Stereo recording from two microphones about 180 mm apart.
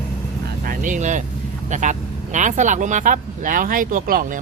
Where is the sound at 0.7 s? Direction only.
45° right (ahead or behind).